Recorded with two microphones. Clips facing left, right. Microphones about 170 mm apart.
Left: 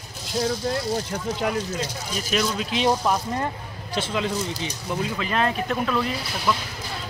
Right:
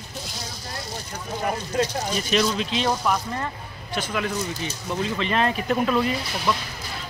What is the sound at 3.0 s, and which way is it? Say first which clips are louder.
Speech: left 1 dB; 25° left (ahead or behind).